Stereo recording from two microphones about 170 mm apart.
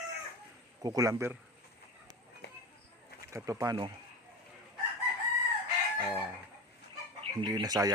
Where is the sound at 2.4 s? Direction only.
75° left (ahead or behind).